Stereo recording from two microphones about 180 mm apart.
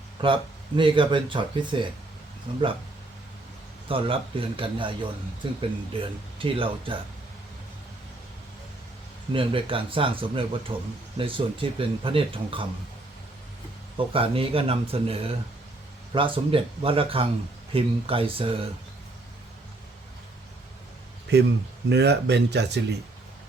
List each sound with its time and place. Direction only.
0.2 s a man's voice: 30° right (ahead or behind)
3.8 s speech: 30° right (ahead or behind)
9.3 s speech: 30° right (ahead or behind)
13.9 s speech: 30° right (ahead or behind)
21.3 s speech: 65° right (ahead or behind)